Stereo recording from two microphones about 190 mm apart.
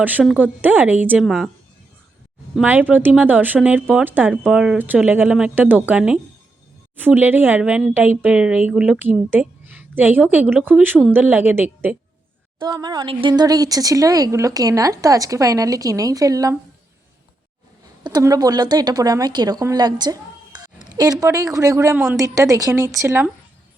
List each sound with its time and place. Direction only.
0.0 s speech: 10° right (ahead or behind)
2.6 s speech: 10° right (ahead or behind)
12.8 s speech: 20° right (ahead or behind)
18.0 s speech: 20° right (ahead or behind)
22.2 s speech: 20° right (ahead or behind)